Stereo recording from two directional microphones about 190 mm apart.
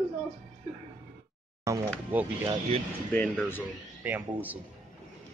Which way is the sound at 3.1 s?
10° left (ahead or behind).